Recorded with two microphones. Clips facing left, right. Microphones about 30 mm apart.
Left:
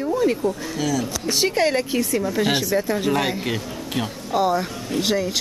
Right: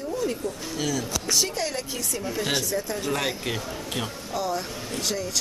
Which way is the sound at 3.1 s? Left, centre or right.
Centre.